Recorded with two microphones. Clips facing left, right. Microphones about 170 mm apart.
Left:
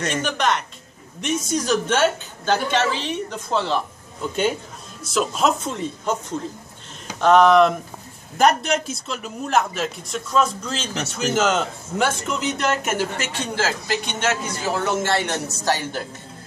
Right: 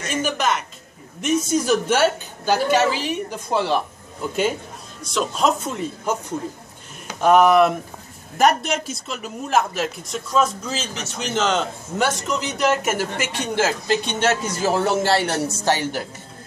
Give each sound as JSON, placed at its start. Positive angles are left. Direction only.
{"t": 0.1, "sound": "a woman's voice", "side_deg": -5}
{"t": 5.0, "sound": "a woman's voice", "side_deg": 5}
{"t": 13.2, "sound": "a woman's voice", "side_deg": -15}
{"t": 14.6, "sound": "a man's voice", "side_deg": -35}
{"t": 15.6, "sound": "a woman's voice", "side_deg": -20}